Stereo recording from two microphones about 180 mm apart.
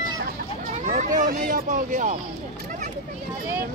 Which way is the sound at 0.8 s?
45° right (ahead or behind).